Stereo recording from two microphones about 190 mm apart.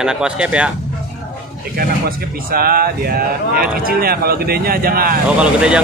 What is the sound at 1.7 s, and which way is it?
Speech, 50° right (ahead or behind).